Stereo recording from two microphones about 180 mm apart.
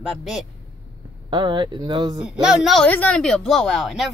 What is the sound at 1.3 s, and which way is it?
Speech, 25° right (ahead or behind).